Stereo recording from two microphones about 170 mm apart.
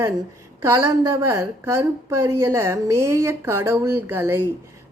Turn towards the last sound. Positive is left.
turn(degrees=-15)  # may be behind; listen again after turning